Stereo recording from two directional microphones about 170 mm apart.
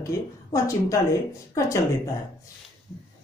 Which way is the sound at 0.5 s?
20° left (ahead or behind).